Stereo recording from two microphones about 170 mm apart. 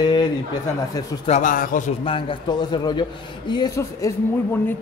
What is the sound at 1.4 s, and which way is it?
Speech, 55° left (ahead or behind).